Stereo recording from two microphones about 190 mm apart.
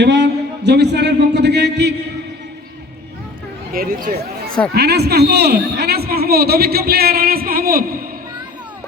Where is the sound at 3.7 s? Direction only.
50° right (ahead or behind).